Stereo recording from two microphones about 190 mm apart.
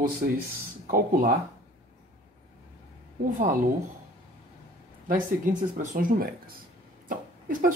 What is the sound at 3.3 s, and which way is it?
Speech, 45° right (ahead or behind).